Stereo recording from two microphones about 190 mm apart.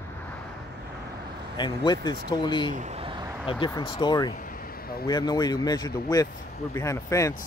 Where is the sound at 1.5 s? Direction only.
25° left (ahead or behind).